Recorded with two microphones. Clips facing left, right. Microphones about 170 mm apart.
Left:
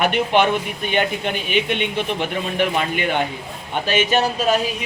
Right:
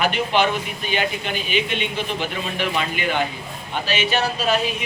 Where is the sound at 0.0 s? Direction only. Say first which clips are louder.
Left 3 dB; 60° left (ahead or behind).